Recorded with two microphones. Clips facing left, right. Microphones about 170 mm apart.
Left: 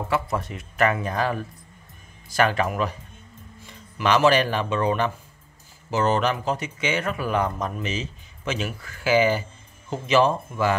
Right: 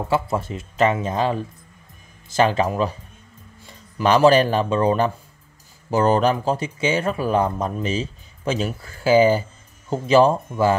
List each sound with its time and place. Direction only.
0.1 s speech: 30° right (ahead or behind)
4.0 s speech: 35° right (ahead or behind)